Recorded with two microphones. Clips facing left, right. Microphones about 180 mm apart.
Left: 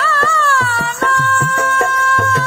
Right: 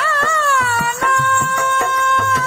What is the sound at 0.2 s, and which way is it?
Music, centre (ahead or behind).